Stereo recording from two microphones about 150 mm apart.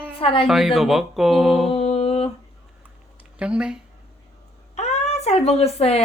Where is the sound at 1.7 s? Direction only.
45° left (ahead or behind).